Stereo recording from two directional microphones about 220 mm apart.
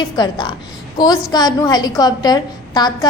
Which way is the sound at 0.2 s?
20° left (ahead or behind).